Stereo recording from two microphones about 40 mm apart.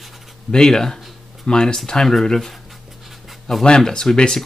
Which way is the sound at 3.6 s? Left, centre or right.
Centre.